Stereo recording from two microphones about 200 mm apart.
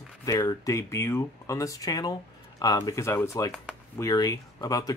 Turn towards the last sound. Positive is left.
turn(degrees=20)  # may be behind; listen again after turning